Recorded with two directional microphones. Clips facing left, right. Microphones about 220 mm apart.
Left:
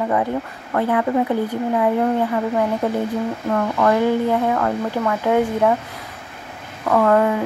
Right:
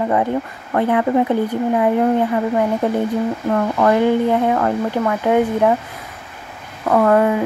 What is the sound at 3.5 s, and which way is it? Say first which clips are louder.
Speech: right 2 dB; 25° right (ahead or behind).